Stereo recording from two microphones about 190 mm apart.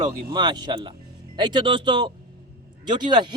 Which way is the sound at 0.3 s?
20° right (ahead or behind).